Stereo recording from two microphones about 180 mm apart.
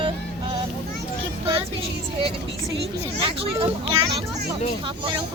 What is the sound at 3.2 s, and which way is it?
Speech, 30° right (ahead or behind).